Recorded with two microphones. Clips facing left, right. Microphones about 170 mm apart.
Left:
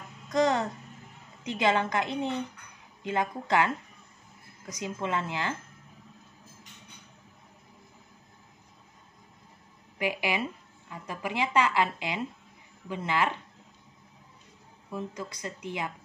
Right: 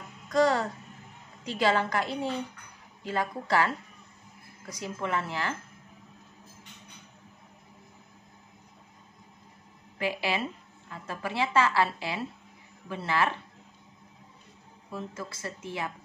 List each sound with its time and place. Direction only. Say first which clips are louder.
0.3 s music: right 1 dB; 20° left (ahead or behind)
1.4 s a woman's voice: even; 20° left (ahead or behind)
9.9 s a woman's voice: even; 15° left (ahead or behind)
14.9 s a woman's voice: left 2 dB; 15° left (ahead or behind)